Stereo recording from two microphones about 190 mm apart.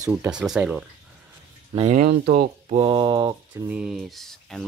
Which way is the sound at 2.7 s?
25° right (ahead or behind).